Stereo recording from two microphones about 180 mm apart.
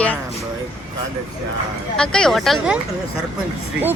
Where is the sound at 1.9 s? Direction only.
5° left (ahead or behind).